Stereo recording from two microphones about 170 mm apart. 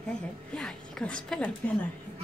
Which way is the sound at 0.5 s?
5° left (ahead or behind).